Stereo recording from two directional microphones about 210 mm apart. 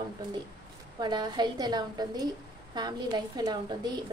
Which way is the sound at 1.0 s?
20° right (ahead or behind).